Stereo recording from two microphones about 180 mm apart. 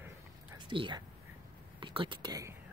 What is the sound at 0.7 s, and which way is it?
Speech, 25° right (ahead or behind).